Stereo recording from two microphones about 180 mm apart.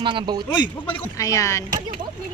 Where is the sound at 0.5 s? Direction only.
25° left (ahead or behind).